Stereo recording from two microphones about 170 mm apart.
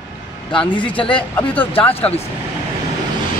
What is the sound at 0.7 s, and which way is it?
Speech, 30° left (ahead or behind).